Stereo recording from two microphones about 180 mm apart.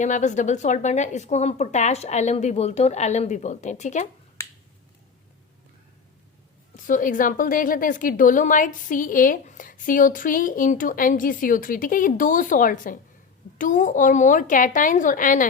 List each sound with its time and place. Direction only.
0.0 s speech: 40° left (ahead or behind)
6.7 s a woman's voice: 45° left (ahead or behind)